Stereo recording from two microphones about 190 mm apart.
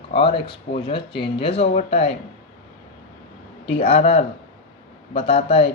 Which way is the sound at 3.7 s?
35° left (ahead or behind).